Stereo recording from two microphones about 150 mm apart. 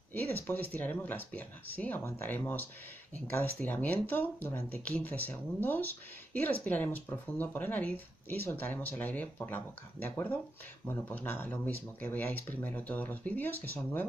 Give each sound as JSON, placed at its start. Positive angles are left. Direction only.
{"t": 0.1, "sound": "speech", "side_deg": 15}